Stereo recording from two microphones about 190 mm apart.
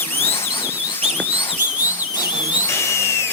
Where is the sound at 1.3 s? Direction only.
20° left (ahead or behind).